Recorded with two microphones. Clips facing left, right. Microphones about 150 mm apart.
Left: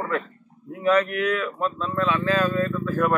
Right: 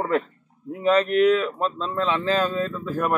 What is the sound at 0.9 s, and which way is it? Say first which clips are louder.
Speech: right 4 dB; 25° right (ahead or behind).